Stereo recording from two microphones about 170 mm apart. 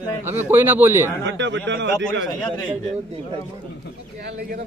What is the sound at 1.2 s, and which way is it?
Speech, 90° right.